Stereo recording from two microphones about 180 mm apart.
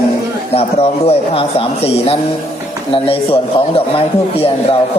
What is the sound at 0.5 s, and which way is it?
Speech, 35° left (ahead or behind).